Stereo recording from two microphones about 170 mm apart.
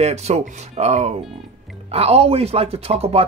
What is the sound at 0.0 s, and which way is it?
Speech, 40° right (ahead or behind).